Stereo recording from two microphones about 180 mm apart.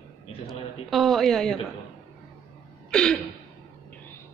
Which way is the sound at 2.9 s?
5° left (ahead or behind).